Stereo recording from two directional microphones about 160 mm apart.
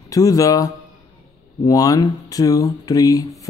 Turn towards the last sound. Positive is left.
turn(degrees=20)  # may be behind; listen again after turning